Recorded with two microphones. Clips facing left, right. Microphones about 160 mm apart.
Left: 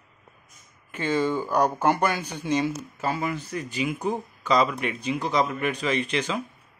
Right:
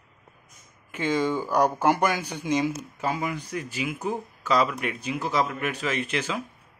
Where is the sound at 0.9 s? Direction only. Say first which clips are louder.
Even; 10° right (ahead or behind).